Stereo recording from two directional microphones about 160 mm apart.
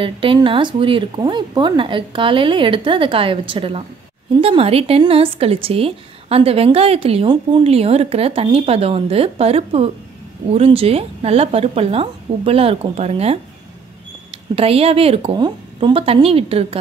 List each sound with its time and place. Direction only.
0.0 s a woman's voice: 30° right (ahead or behind)